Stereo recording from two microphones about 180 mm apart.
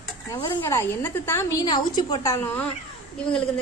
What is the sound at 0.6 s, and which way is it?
A woman's voice, 15° left (ahead or behind).